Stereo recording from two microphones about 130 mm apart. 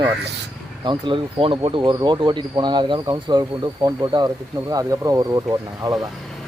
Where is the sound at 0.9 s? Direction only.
40° right (ahead or behind).